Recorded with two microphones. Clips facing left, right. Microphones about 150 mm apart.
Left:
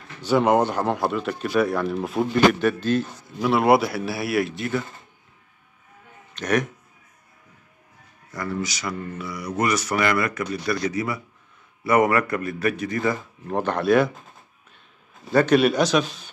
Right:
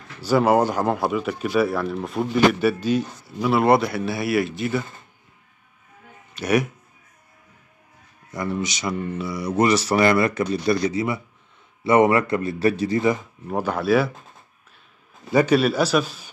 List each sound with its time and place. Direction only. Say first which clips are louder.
0.2 s speech: right 1 dB; 5° right (ahead or behind)
6.3 s speech: right 2 dB; 10° right (ahead or behind)
8.3 s speech: right 2 dB; 20° right (ahead or behind)
13.0 s speech: right 3 dB; 15° right (ahead or behind)
15.3 s speech: even; 5° right (ahead or behind)